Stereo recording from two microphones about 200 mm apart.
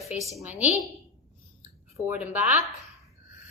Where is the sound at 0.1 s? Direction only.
Centre (ahead or behind).